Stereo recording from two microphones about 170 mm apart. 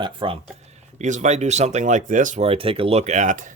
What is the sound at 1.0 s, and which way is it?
Speech, 45° right (ahead or behind).